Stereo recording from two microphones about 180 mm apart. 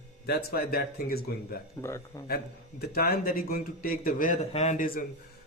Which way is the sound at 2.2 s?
60° left (ahead or behind).